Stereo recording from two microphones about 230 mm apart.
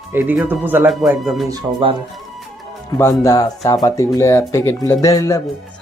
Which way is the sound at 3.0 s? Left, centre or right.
Centre.